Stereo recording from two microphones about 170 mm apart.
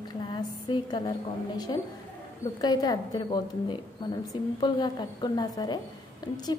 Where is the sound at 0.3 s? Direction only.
30° left (ahead or behind).